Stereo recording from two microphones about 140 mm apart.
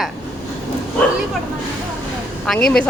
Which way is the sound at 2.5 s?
5° left (ahead or behind).